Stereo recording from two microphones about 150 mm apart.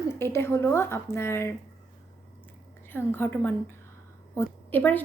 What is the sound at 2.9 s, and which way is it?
A woman's voice, 15° left (ahead or behind).